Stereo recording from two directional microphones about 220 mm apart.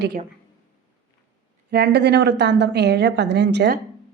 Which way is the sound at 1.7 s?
50° right (ahead or behind).